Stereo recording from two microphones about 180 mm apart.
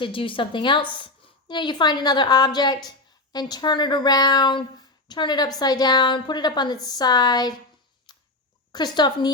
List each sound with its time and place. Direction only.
0.0 s a woman's voice: 30° left (ahead or behind)
8.1 s a sound: 20° left (ahead or behind)
8.7 s a woman's voice: 25° left (ahead or behind)